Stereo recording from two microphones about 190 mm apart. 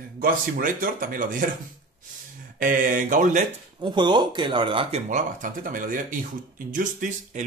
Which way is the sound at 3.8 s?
25° right (ahead or behind).